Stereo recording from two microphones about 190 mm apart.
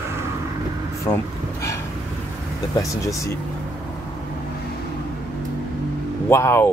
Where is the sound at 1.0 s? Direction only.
15° left (ahead or behind).